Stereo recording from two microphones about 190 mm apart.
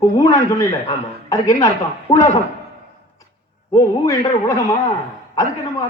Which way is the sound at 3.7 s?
15° left (ahead or behind).